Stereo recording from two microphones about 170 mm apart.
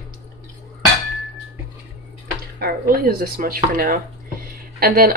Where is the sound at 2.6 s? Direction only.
60° right (ahead or behind).